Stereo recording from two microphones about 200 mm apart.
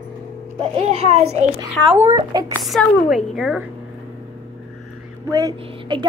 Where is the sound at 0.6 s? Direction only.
30° right (ahead or behind).